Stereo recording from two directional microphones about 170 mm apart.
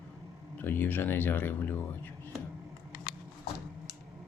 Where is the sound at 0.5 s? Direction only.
10° left (ahead or behind).